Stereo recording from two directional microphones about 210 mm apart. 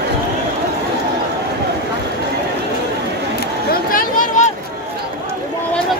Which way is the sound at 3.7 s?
40° left (ahead or behind).